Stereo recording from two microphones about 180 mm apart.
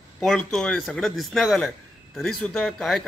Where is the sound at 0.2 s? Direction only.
5° left (ahead or behind).